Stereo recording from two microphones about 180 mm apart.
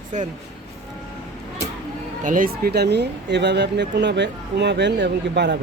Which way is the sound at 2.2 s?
50° right (ahead or behind).